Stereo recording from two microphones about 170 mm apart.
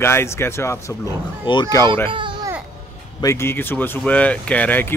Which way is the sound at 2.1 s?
30° right (ahead or behind).